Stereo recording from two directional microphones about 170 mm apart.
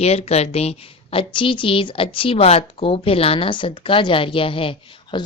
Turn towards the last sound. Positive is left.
turn(degrees=30)  # may be behind; listen again after turning